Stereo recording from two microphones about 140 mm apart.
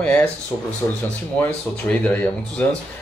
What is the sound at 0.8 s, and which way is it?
Speech, 30° left (ahead or behind).